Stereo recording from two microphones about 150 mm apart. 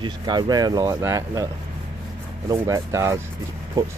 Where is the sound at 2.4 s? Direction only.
20° right (ahead or behind).